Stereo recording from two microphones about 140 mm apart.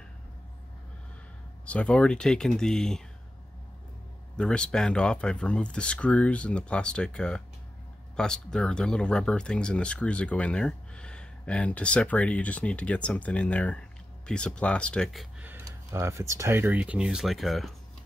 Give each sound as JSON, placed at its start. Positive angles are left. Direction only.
{"t": 1.7, "sound": "speech", "side_deg": 10}
{"t": 4.4, "sound": "speech", "side_deg": 5}
{"t": 15.6, "sound": "speech", "side_deg": -20}